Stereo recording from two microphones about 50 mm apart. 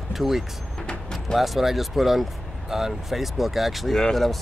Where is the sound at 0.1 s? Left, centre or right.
Centre.